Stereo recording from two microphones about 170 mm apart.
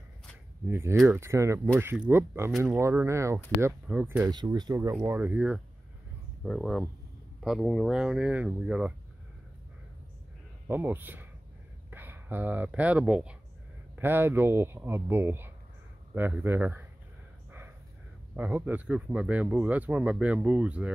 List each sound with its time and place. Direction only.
0.7 s speech: 15° right (ahead or behind)
4.3 s speech: 25° right (ahead or behind)
6.4 s speech: centre (ahead or behind)
10.7 s speech: 10° right (ahead or behind)
17.5 s snort: 15° right (ahead or behind)
18.3 s speech: 10° right (ahead or behind)